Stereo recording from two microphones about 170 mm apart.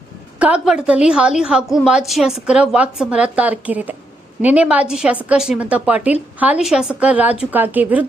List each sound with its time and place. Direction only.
0.3 s a woman's voice: 5° right (ahead or behind)